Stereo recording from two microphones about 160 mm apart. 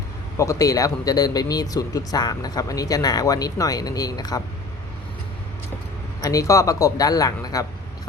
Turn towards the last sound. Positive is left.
turn(degrees=20)  # may be behind; listen again after turning